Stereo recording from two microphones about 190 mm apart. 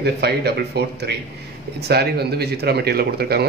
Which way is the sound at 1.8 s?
60° right (ahead or behind).